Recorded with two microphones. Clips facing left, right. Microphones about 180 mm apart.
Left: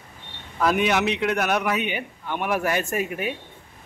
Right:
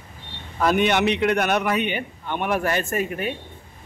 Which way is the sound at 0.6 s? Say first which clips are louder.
Right 2 dB; centre (ahead or behind).